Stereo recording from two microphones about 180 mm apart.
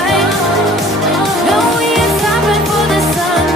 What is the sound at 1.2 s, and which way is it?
Music, centre (ahead or behind).